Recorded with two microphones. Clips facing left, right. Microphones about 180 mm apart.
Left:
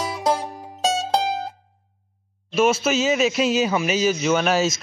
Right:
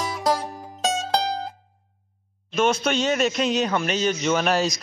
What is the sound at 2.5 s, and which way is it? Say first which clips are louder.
A man's voice: left 2 dB; 5° left (ahead or behind).